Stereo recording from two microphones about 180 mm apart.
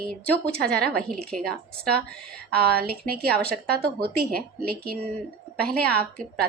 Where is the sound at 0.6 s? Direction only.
5° left (ahead or behind).